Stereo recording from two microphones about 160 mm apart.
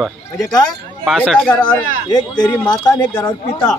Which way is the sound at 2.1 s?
25° left (ahead or behind).